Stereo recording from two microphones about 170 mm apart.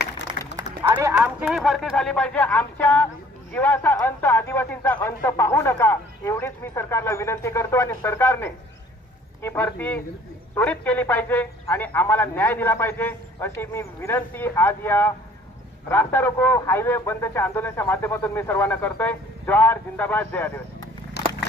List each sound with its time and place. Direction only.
0.8 s speech: 15° right (ahead or behind)
1.4 s speech: centre (ahead or behind)
21.2 s a sound: 75° left (ahead or behind)